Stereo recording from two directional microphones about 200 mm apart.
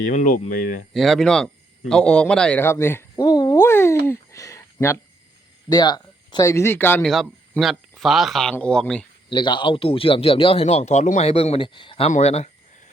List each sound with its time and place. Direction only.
0.0 s speech: 40° left (ahead or behind)
0.9 s speech: centre (ahead or behind)
4.0 s a sound: 15° left (ahead or behind)
5.6 s speech: 20° left (ahead or behind); by 9.0 s 5° left (ahead or behind)
9.3 s speech: 25° left (ahead or behind)